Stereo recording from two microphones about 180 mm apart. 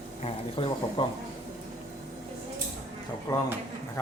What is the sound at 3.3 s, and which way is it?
Speech, 20° left (ahead or behind).